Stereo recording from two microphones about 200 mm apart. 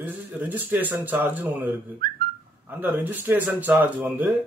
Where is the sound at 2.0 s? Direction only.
45° right (ahead or behind).